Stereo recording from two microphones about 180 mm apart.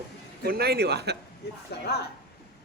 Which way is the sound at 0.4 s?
60° right (ahead or behind).